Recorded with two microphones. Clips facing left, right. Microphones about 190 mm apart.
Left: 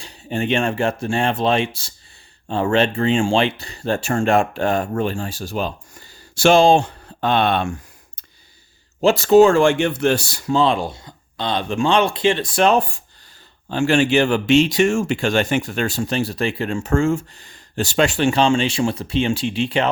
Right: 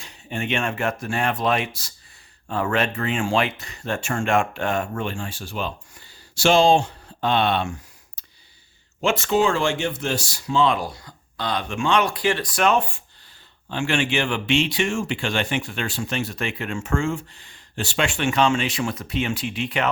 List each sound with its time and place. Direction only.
0.0 s speech: 35° left (ahead or behind); by 8.2 s 50° left (ahead or behind)
9.0 s speech: 35° left (ahead or behind); by 10.5 s 60° left (ahead or behind)
10.5 s speech: 35° left (ahead or behind)